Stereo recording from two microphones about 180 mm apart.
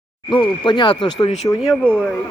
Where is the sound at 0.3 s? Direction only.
25° left (ahead or behind).